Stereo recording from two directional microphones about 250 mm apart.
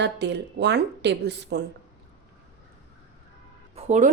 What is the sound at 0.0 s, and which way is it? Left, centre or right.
Speech, right.